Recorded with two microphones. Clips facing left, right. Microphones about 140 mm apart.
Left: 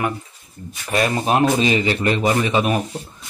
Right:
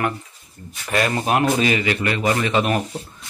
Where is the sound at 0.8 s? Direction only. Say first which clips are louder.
Left 1 dB; 20° left (ahead or behind).